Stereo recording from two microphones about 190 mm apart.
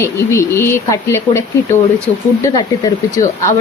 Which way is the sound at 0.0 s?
15° left (ahead or behind).